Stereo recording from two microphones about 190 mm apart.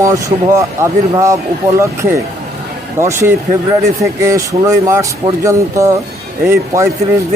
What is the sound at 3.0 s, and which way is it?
Speech, 15° right (ahead or behind).